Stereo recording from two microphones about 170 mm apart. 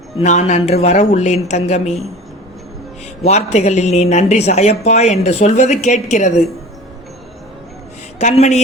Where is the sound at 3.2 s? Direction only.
40° left (ahead or behind).